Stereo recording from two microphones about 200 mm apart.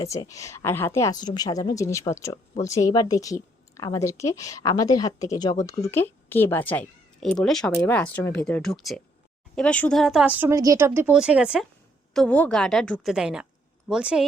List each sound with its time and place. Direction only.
0.0 s speech: 15° left (ahead or behind); by 11.6 s 5° right (ahead or behind)
12.1 s a woman's voice: 5° left (ahead or behind)